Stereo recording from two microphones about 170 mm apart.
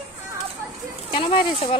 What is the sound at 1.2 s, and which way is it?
Speech, 35° left (ahead or behind).